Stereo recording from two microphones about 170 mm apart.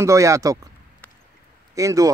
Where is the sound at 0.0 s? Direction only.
20° right (ahead or behind).